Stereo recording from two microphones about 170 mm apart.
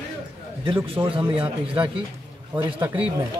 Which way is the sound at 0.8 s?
30° right (ahead or behind).